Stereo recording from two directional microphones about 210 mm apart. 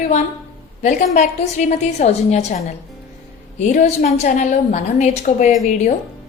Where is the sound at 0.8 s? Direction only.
35° left (ahead or behind).